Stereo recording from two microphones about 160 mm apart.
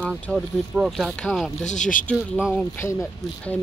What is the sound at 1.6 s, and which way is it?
Speech, 50° left (ahead or behind).